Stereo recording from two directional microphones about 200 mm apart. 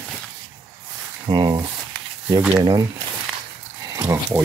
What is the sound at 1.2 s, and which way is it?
Speech, 20° right (ahead or behind).